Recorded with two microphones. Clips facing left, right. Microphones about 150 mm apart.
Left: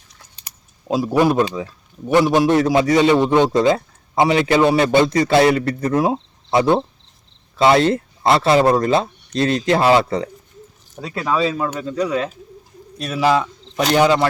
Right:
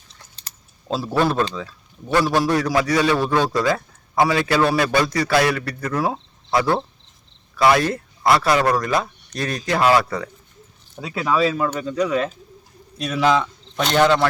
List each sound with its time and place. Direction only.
0.3 s speech: 15° left (ahead or behind)
10.9 s speech: 5° right (ahead or behind)